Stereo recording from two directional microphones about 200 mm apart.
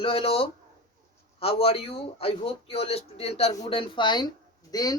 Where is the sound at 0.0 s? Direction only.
30° left (ahead or behind).